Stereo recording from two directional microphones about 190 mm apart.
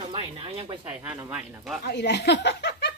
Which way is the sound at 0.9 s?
10° right (ahead or behind).